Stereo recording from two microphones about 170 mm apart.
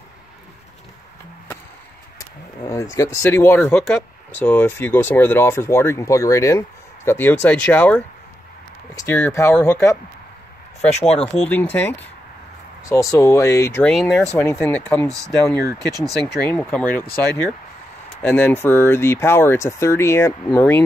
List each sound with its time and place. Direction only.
2.1 s speech: 20° left (ahead or behind)
11.0 s speech: 35° left (ahead or behind)
11.4 s speech: 10° left (ahead or behind)
13.9 s speech: 5° left (ahead or behind)
16.3 s speech: 10° left (ahead or behind)